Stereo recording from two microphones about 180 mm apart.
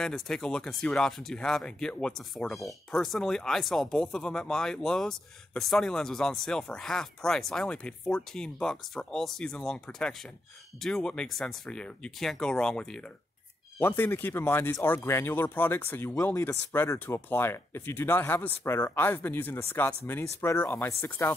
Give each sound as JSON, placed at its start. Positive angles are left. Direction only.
{"t": 0.0, "sound": "speech", "side_deg": 5}